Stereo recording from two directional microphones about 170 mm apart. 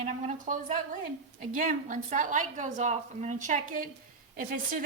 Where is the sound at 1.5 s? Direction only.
50° right (ahead or behind).